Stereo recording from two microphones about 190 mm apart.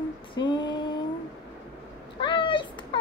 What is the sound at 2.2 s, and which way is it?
Cat, 25° left (ahead or behind).